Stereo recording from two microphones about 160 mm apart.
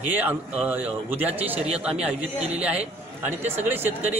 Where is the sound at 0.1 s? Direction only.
10° right (ahead or behind).